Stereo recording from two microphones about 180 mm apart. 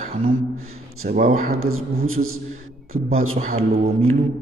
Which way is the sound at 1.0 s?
45° right (ahead or behind).